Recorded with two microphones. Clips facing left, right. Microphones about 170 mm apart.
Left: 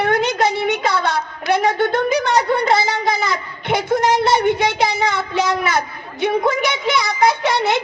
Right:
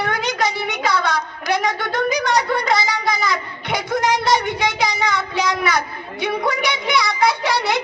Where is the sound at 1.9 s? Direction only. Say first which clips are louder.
Left 2 dB; 25° left (ahead or behind).